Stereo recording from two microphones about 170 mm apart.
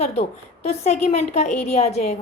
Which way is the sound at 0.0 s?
40° left (ahead or behind).